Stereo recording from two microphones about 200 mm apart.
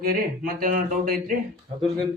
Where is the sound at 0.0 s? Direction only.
45° right (ahead or behind).